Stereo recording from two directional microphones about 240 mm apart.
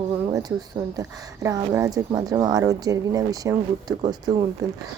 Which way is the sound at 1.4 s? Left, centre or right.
Centre.